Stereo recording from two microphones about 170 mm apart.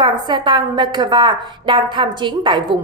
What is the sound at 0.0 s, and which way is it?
A woman's voice, 25° right (ahead or behind).